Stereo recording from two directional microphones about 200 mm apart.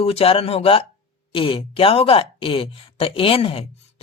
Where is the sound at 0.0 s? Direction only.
30° left (ahead or behind).